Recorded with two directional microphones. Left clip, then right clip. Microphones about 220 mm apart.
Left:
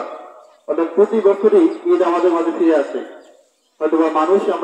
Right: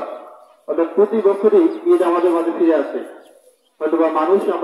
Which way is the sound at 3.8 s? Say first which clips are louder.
Left 1 dB; 35° left (ahead or behind).